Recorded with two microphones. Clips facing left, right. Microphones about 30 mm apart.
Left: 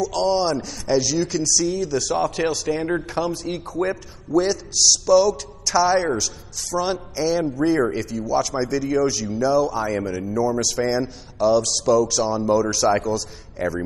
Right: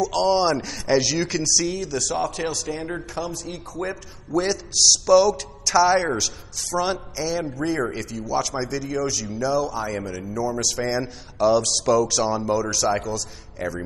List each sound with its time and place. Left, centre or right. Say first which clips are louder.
0.0 s a man's voice: right 1 dB; centre
1.8 s a man's voice: left 3 dB; centre
3.2 s a man's voice: left 5 dB; left
3.9 s a man's voice: left 4 dB; centre
7.2 s a man's voice: left 5 dB; centre